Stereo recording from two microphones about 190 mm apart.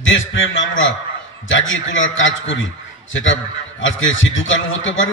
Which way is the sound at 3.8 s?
90° left.